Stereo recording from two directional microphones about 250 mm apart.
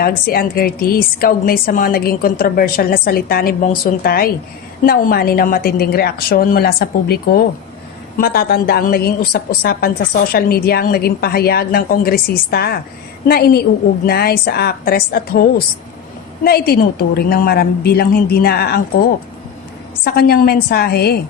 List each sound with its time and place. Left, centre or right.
0.0 s a woman's voice: left
20.1 s a woman's voice: left